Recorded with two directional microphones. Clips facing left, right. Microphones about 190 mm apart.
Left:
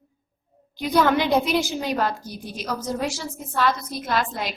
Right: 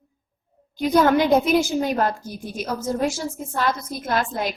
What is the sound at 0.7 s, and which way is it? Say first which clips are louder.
A woman's voice: right 3 dB; 45° right (ahead or behind).